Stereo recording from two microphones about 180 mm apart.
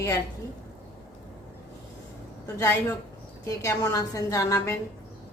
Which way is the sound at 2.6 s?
15° left (ahead or behind).